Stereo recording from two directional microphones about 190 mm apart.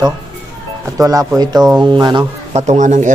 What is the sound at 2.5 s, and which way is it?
Speech, 35° right (ahead or behind).